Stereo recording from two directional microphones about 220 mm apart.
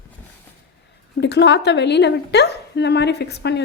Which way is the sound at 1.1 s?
50° left (ahead or behind).